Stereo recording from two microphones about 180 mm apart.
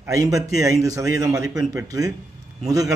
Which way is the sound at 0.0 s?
20° right (ahead or behind).